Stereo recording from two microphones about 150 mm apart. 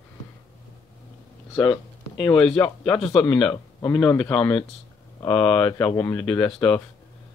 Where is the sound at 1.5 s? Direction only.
25° left (ahead or behind).